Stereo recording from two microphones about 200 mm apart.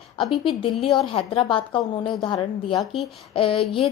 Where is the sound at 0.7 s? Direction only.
Centre (ahead or behind).